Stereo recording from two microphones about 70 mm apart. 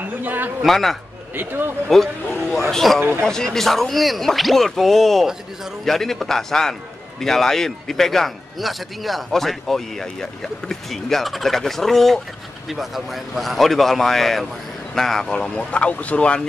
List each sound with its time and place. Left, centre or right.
0.2 s speech: right
0.7 s a man's voice: centre
1.3 s speech: right
1.9 s a man's voice: centre